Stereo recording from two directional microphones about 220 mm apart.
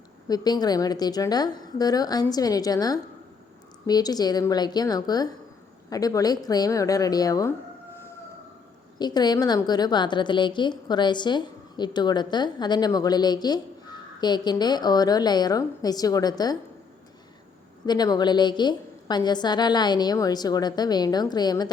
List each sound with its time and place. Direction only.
0.3 s a woman's voice: 15° left (ahead or behind)
9.0 s a woman's voice: 20° left (ahead or behind)
17.8 s a woman's voice: 20° left (ahead or behind)